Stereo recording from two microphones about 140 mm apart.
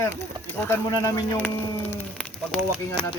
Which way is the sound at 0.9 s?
30° left (ahead or behind).